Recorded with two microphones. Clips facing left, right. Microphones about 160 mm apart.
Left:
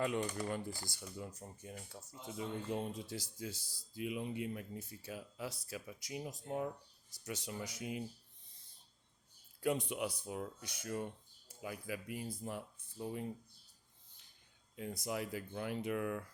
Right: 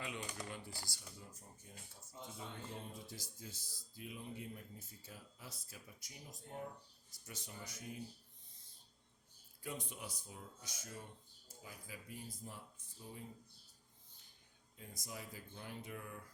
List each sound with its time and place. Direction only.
0.0 s speech: 50° left (ahead or behind)
1.2 s speech: 75° left (ahead or behind)
9.6 s speech: 70° left (ahead or behind)
14.8 s speech: 70° left (ahead or behind)